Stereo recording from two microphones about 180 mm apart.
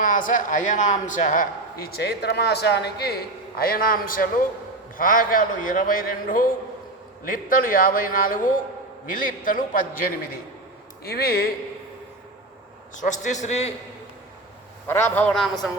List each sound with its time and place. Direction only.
0.0 s a man's voice: 45° left (ahead or behind)
11.0 s speech: 60° left (ahead or behind)
13.0 s a man's voice: 45° left (ahead or behind)
14.8 s a man's voice: 10° left (ahead or behind)